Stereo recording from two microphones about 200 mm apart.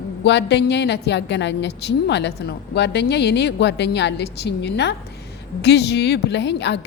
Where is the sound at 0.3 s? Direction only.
60° left (ahead or behind).